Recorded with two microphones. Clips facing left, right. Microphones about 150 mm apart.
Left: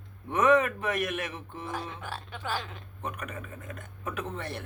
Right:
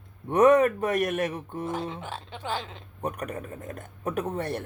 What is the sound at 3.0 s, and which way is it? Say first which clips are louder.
A man's voice: right 6 dB; 40° right (ahead or behind).